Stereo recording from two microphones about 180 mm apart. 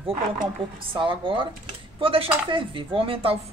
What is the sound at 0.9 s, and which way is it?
Speech, 30° right (ahead or behind).